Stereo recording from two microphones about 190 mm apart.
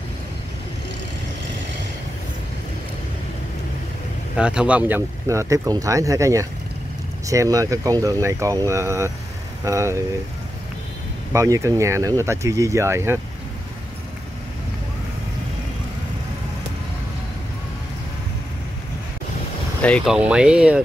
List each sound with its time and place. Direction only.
4.4 s speech: 5° right (ahead or behind)
11.3 s speech: 15° right (ahead or behind)
19.8 s speech: 5° left (ahead or behind)
20.2 s speech: 5° right (ahead or behind)